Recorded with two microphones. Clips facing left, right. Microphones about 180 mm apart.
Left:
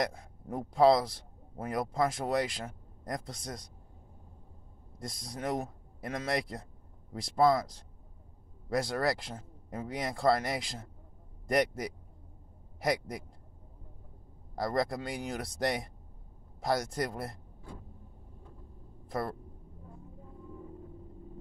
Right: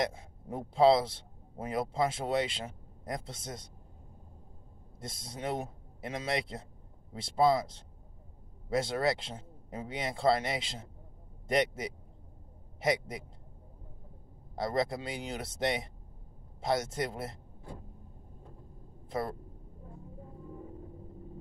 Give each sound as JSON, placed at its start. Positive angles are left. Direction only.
{"t": 0.7, "sound": "speech", "side_deg": -25}
{"t": 2.6, "sound": "a sound", "side_deg": -5}
{"t": 3.2, "sound": "speech", "side_deg": -25}
{"t": 4.9, "sound": "a man's voice", "side_deg": -25}
{"t": 14.5, "sound": "speech", "side_deg": -25}